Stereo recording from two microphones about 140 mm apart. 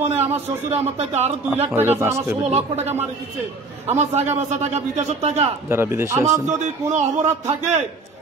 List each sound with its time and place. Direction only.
0.0 s a man's voice: 50° right (ahead or behind)
1.7 s a man's voice: 15° right (ahead or behind)
2.4 s a man's voice: 50° right (ahead or behind)
5.7 s a man's voice: 15° right (ahead or behind)
6.4 s a man's voice: 60° right (ahead or behind)